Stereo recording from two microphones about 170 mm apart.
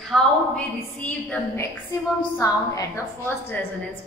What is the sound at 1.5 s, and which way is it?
A woman's voice, 20° left (ahead or behind).